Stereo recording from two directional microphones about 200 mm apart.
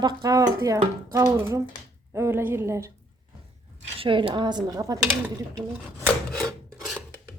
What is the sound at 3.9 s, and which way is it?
Speech, 25° right (ahead or behind).